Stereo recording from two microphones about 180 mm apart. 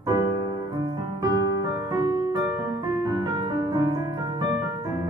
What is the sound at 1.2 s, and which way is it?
Music, 20° right (ahead or behind).